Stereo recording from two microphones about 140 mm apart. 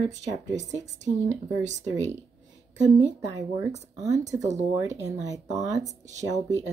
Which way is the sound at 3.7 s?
55° right (ahead or behind).